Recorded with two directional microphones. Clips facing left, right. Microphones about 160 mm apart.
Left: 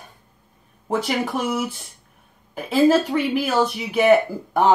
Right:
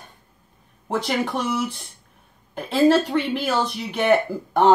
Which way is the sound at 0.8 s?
5° left (ahead or behind).